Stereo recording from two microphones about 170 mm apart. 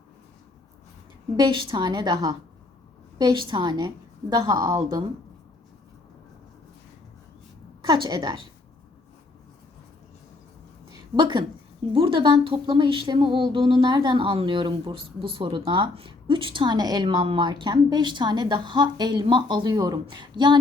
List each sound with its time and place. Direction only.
1.4 s speech: 30° right (ahead or behind)
7.9 s speech: 25° right (ahead or behind)
11.2 s speech: 25° right (ahead or behind)